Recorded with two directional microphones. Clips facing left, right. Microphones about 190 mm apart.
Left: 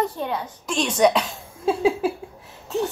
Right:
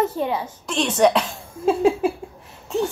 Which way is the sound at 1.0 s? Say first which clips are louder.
Right 1 dB; 10° left (ahead or behind).